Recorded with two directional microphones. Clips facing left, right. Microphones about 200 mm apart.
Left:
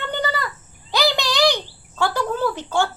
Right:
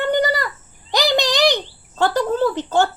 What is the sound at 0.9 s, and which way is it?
Cricket, 20° right (ahead or behind).